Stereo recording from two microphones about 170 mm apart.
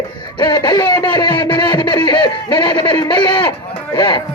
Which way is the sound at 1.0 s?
30° left (ahead or behind).